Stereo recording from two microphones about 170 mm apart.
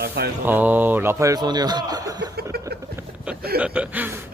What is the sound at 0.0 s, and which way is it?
Mantra, 70° right (ahead or behind).